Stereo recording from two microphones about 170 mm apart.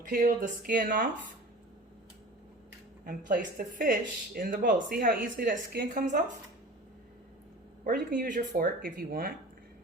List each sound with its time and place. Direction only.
0.1 s speech: 55° right (ahead or behind)
3.1 s speech: 55° right (ahead or behind)
5.9 s speech: 50° right (ahead or behind)
7.9 s speech: 55° right (ahead or behind)